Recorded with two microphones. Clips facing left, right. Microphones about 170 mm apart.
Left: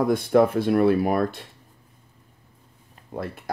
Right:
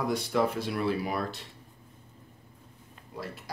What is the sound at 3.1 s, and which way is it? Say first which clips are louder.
Speech: left 8 dB; 55° left (ahead or behind).